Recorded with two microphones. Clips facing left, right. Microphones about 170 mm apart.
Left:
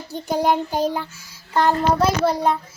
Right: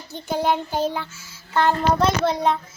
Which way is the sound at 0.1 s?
40° left (ahead or behind).